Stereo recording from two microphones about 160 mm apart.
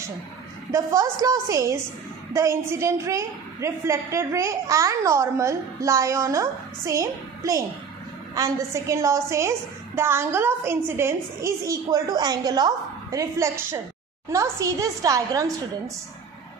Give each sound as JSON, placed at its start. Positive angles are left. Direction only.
{"t": 0.7, "sound": "a woman's voice", "side_deg": -20}